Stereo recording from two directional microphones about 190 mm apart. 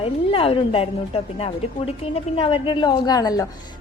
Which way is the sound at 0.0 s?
30° left (ahead or behind).